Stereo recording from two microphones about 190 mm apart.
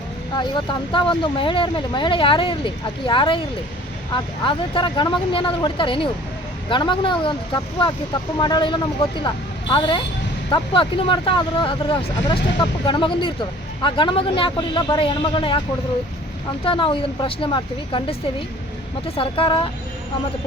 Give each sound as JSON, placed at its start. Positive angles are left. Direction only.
{"t": 0.3, "sound": "speech", "side_deg": 25}
{"t": 16.6, "sound": "speech", "side_deg": 25}